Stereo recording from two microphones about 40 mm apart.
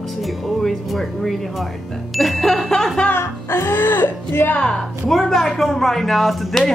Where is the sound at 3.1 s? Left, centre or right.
Left.